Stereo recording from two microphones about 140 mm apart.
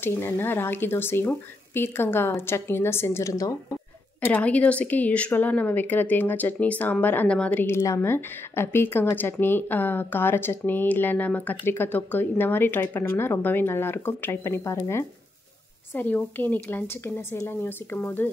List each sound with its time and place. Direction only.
0.0 s a woman's voice: 15° left (ahead or behind)
4.2 s a woman's voice: 10° left (ahead or behind)